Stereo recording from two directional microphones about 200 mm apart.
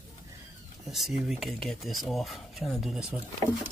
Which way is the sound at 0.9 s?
Centre (ahead or behind).